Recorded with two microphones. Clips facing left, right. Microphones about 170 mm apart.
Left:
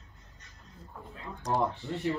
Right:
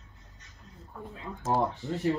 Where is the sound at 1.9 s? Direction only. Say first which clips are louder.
Right 3 dB; 40° right (ahead or behind).